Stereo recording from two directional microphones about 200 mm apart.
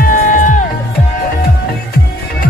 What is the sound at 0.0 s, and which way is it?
Music, 40° left (ahead or behind).